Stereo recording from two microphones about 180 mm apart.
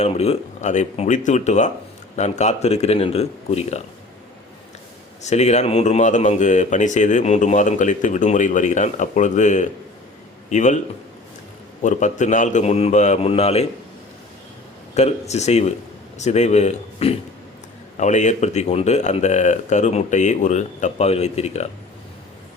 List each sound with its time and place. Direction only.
0.0 s speech: 35° left (ahead or behind)
5.2 s speech: 40° left (ahead or behind)
11.8 s speech: 40° left (ahead or behind)
14.9 s speech: 35° left (ahead or behind)